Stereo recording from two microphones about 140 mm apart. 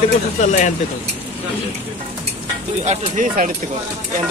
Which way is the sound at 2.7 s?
55° right (ahead or behind).